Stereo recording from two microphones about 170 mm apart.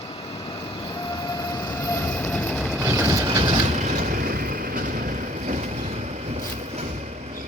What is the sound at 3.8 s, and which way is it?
Vehicle, 55° right (ahead or behind).